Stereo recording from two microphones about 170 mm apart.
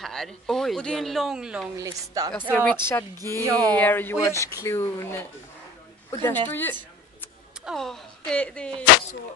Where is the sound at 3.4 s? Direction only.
20° right (ahead or behind).